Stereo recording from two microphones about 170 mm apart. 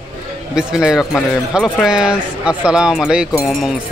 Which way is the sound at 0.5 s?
5° right (ahead or behind).